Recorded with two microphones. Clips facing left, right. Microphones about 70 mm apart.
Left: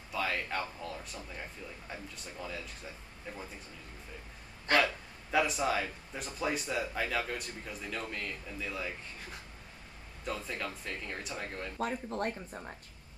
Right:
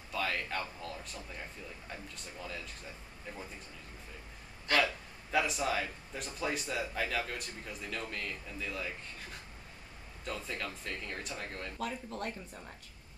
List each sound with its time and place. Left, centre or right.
0.1 s speech: centre
2.4 s speech: centre
4.6 s hiccup: left
5.3 s speech: centre
10.2 s speech: centre
11.8 s speech: left